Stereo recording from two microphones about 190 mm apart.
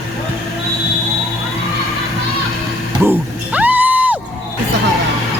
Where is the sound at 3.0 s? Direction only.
10° right (ahead or behind).